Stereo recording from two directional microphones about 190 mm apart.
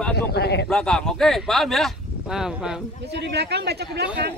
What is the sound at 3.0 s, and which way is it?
A man's voice, 65° right (ahead or behind).